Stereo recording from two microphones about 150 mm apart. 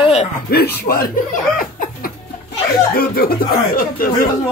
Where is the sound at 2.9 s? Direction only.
90° left.